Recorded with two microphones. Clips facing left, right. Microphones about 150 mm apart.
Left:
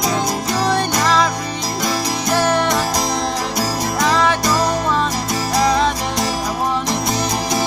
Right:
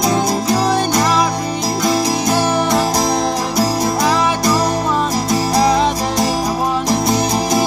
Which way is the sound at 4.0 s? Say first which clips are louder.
Left 2 dB; 10° right (ahead or behind).